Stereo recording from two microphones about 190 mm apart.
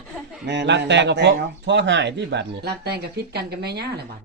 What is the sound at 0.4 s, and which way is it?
A man's voice, 65° right (ahead or behind).